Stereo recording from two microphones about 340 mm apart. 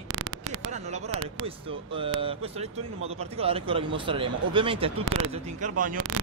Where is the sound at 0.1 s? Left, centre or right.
Right.